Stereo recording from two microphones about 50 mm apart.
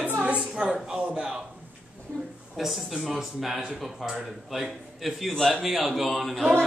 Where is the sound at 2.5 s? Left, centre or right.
Centre.